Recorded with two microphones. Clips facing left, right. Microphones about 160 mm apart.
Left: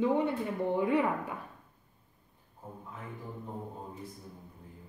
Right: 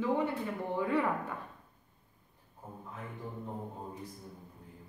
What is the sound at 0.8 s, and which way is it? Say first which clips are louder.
Speech: left 1 dB; 15° left (ahead or behind).